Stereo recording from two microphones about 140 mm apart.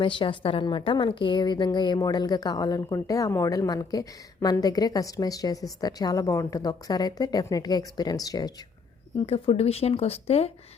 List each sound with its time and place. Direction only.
0.0 s a woman's voice: 35° left (ahead or behind)
9.1 s speech: 45° left (ahead or behind)